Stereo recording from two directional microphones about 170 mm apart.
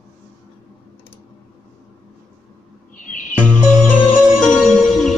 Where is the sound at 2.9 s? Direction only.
50° left (ahead or behind).